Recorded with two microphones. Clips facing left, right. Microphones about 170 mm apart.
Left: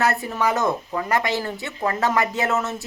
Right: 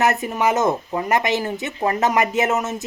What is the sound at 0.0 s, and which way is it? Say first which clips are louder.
Speech: right 3 dB; 20° right (ahead or behind).